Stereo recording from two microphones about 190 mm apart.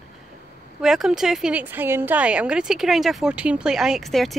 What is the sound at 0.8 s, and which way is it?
A woman's voice, centre (ahead or behind).